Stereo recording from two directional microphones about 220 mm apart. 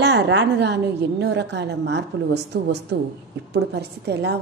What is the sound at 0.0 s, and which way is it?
A woman's voice, 50° right (ahead or behind).